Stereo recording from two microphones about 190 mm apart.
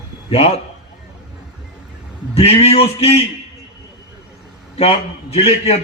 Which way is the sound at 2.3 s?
30° left (ahead or behind).